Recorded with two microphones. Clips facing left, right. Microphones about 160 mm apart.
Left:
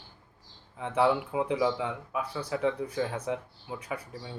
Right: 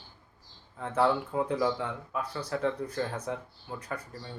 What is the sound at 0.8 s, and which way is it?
Speech, 5° left (ahead or behind).